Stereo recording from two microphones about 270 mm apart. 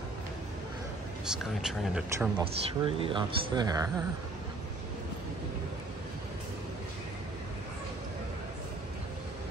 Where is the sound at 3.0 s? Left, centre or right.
Centre.